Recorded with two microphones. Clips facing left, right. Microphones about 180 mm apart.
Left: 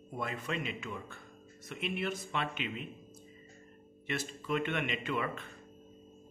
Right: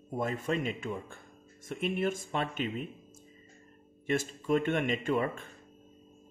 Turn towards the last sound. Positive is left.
turn(degrees=-45)  # may be behind; listen again after turning